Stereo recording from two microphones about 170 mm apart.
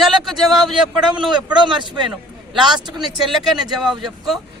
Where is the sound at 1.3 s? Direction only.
25° right (ahead or behind).